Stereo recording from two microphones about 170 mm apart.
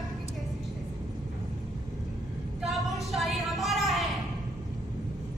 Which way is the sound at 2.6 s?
Centre (ahead or behind).